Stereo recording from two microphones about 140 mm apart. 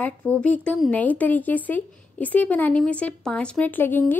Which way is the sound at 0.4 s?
10° left (ahead or behind).